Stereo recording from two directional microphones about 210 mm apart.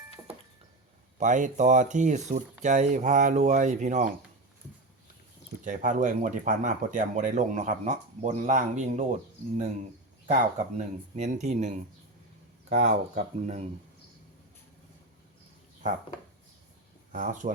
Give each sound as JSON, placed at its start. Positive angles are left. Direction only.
{"t": 1.2, "sound": "speech", "side_deg": -35}
{"t": 5.6, "sound": "speech", "side_deg": -40}
{"t": 10.2, "sound": "speech", "side_deg": -35}
{"t": 17.1, "sound": "speech", "side_deg": -35}